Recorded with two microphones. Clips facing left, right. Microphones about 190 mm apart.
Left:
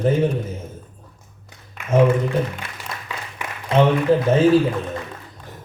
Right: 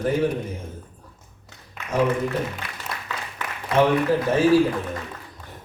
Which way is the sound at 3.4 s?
10° left (ahead or behind).